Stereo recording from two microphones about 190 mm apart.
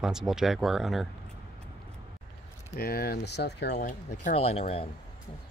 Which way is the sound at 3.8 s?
40° left (ahead or behind).